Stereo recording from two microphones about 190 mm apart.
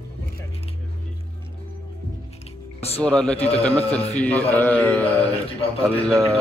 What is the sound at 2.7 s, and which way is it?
Music, 30° left (ahead or behind).